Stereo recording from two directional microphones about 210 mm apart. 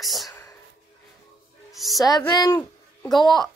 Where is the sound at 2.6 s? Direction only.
Centre (ahead or behind).